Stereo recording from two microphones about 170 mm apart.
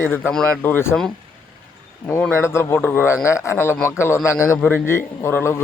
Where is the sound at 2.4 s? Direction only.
15° left (ahead or behind).